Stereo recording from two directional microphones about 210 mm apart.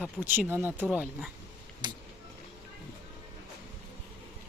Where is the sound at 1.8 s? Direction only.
20° right (ahead or behind).